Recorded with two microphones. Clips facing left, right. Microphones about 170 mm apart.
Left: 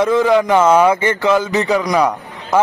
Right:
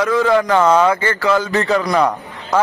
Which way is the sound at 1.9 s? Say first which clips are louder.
Left 1 dB; 5° left (ahead or behind).